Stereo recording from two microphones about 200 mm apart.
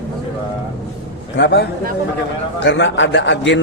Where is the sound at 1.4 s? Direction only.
60° left (ahead or behind).